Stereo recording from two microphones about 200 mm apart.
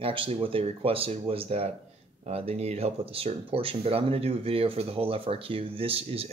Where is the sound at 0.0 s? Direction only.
25° right (ahead or behind).